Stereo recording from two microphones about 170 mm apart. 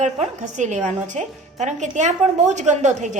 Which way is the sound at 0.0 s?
45° right (ahead or behind).